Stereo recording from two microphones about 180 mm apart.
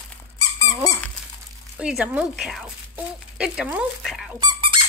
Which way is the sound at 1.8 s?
5° right (ahead or behind).